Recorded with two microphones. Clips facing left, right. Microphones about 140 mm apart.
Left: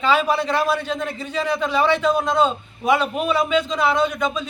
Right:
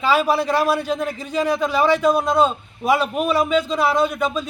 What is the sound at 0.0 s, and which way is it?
A man's voice, 10° right (ahead or behind).